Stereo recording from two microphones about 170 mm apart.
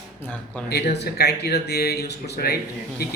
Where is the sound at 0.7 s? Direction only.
80° left.